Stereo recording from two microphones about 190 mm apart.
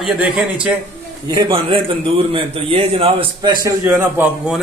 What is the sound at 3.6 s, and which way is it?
A man's voice, 15° right (ahead or behind).